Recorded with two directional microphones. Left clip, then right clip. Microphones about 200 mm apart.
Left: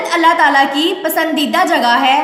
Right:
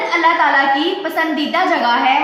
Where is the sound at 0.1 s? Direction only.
55° left (ahead or behind).